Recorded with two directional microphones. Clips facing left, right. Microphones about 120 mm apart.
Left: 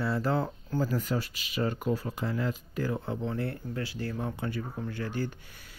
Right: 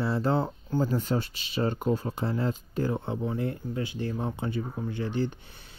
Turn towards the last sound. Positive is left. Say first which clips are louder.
# right 4 dB
turn(degrees=-20)  # may be behind; listen again after turning